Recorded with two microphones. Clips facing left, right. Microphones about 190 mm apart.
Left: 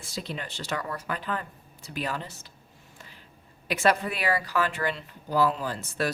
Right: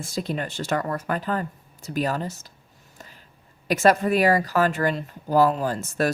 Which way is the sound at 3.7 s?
45° right (ahead or behind).